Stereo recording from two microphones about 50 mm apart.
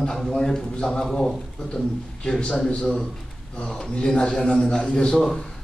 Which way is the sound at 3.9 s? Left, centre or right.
Centre.